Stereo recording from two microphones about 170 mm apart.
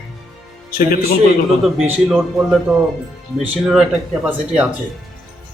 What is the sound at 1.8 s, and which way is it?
Speech, 10° right (ahead or behind).